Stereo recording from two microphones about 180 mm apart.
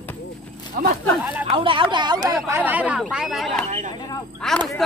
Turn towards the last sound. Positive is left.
turn(degrees=5)  # may be behind; listen again after turning